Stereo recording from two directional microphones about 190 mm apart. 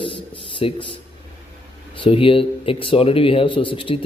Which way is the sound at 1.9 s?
25° left (ahead or behind).